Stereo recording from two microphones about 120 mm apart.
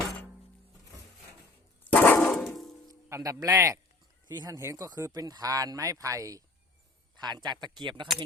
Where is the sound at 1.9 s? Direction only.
15° left (ahead or behind).